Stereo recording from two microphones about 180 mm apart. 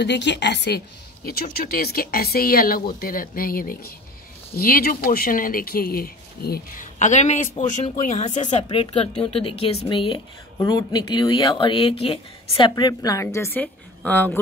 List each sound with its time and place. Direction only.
0.0 s a woman's voice: 75° left (ahead or behind); by 6.9 s 55° left (ahead or behind)
7.0 s speech: 40° left (ahead or behind); by 14.4 s 10° left (ahead or behind)